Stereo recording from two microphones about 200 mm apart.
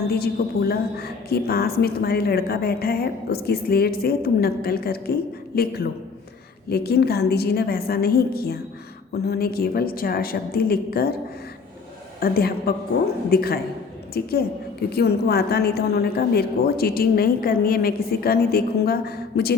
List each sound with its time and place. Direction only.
0.1 s a woman's voice: 50° left (ahead or behind)
12.2 s a woman's voice: 50° left (ahead or behind)